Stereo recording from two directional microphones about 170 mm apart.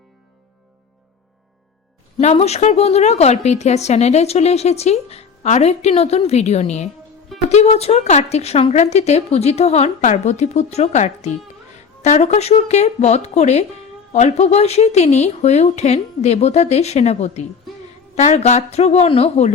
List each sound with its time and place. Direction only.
2.2 s speech: 40° left (ahead or behind)